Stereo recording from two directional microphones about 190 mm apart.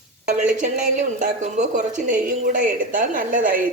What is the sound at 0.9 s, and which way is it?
A woman's voice, 40° right (ahead or behind).